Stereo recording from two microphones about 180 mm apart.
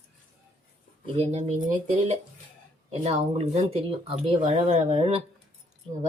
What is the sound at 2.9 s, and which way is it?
Speech, 35° right (ahead or behind).